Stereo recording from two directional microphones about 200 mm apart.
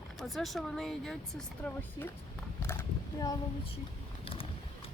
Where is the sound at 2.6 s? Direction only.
10° left (ahead or behind).